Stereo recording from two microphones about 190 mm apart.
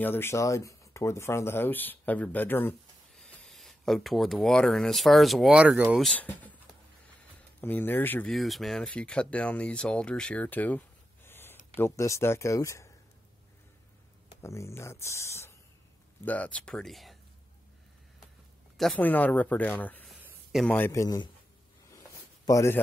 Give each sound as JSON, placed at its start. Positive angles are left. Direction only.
{"t": 0.0, "sound": "speech", "side_deg": 10}
{"t": 7.6, "sound": "speech", "side_deg": 10}
{"t": 14.4, "sound": "speech", "side_deg": 15}
{"t": 18.8, "sound": "speech", "side_deg": 5}
{"t": 20.2, "sound": "a sound", "side_deg": -10}
{"t": 20.6, "sound": "speech", "side_deg": 10}
{"t": 21.9, "sound": "a sound", "side_deg": 15}